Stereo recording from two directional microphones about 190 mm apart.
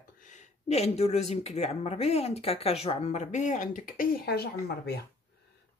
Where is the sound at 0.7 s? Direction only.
35° left (ahead or behind).